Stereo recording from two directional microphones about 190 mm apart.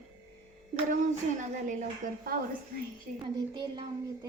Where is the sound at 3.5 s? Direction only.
25° right (ahead or behind).